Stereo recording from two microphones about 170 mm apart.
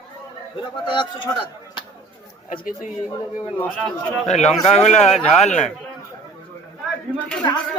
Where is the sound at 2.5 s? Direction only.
55° left (ahead or behind).